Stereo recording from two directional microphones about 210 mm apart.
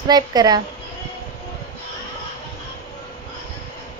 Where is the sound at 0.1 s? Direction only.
20° right (ahead or behind).